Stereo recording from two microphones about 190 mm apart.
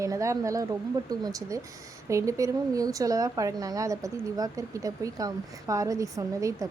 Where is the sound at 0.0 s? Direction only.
15° right (ahead or behind).